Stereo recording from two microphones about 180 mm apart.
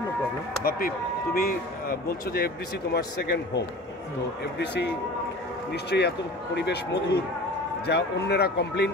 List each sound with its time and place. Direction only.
0.7 s speech: 55° left (ahead or behind)